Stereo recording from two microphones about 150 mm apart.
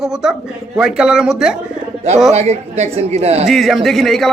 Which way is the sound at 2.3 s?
45° right (ahead or behind).